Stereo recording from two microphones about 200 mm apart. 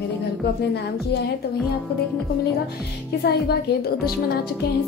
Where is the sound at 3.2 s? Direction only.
55° left (ahead or behind).